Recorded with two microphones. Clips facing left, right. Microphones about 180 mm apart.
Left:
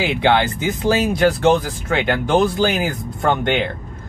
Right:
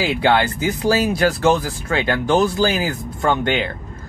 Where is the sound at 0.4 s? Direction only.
25° left (ahead or behind).